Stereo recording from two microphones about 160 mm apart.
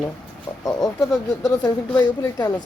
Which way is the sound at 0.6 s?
20° left (ahead or behind).